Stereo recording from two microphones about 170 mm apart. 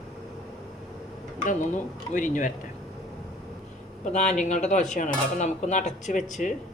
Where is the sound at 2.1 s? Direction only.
50° left (ahead or behind).